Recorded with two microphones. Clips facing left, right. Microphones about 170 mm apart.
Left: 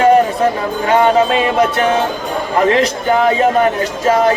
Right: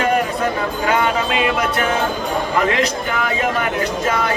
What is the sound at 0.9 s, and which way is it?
Speech, 35° left (ahead or behind).